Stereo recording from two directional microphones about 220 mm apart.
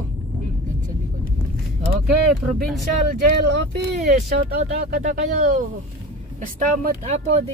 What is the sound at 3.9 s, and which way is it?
Speech, 30° right (ahead or behind).